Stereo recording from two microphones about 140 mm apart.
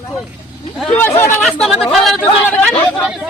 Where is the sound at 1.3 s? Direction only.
5° left (ahead or behind).